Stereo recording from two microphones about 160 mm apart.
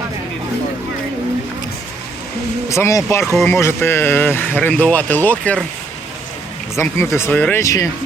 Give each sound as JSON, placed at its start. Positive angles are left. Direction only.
{"t": 2.6, "sound": "speech", "side_deg": 20}
{"t": 6.7, "sound": "speech", "side_deg": 15}